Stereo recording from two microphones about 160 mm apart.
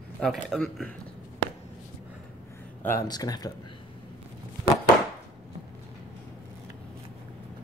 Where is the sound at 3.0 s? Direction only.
25° left (ahead or behind).